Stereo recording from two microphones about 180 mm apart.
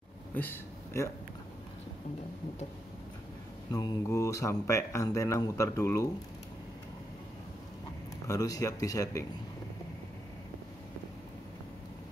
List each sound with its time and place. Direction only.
0.3 s a sound: 10° left (ahead or behind)
3.7 s speech: 15° left (ahead or behind)
8.3 s speech: 20° left (ahead or behind)